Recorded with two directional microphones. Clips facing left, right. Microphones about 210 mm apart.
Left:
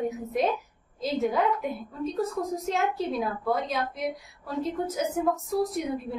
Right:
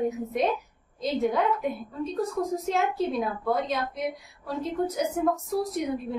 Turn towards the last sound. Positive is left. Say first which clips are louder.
# right 1 dB
turn(degrees=0)  # may be behind; listen again after turning